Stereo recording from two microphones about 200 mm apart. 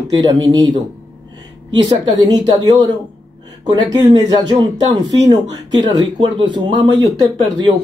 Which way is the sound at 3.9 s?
20° right (ahead or behind).